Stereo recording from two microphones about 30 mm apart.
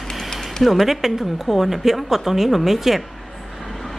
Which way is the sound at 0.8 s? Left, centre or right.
Centre.